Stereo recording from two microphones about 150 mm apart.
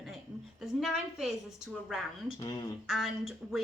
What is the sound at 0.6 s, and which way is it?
A woman's voice, centre (ahead or behind).